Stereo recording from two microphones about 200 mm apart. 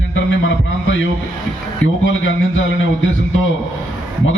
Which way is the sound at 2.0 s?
75° left (ahead or behind).